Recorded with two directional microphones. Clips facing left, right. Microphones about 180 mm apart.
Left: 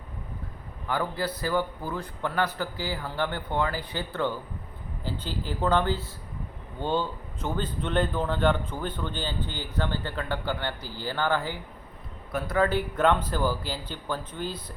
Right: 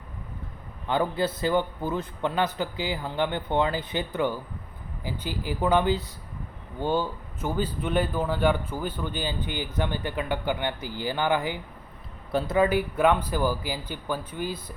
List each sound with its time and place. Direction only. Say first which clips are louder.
0.9 s a man's voice: right 4 dB; 25° right (ahead or behind)
12.3 s a man's voice: right 4 dB; 30° right (ahead or behind)
12.5 s a man's voice: right 1 dB; 10° right (ahead or behind)